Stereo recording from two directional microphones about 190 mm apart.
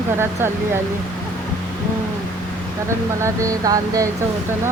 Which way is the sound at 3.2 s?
15° right (ahead or behind).